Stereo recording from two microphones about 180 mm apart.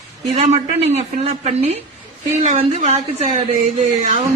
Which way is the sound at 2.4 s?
40° right (ahead or behind).